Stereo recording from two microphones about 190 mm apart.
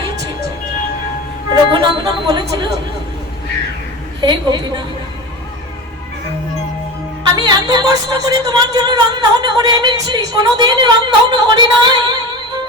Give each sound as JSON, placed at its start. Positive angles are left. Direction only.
{"t": 1.5, "sound": "a sound", "side_deg": -25}
{"t": 4.2, "sound": "speech", "side_deg": -25}
{"t": 7.3, "sound": "speech", "side_deg": -20}